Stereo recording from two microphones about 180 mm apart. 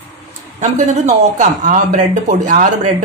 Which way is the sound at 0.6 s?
40° right (ahead or behind).